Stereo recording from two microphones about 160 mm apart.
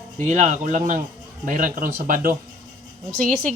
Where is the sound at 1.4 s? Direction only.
60° right (ahead or behind).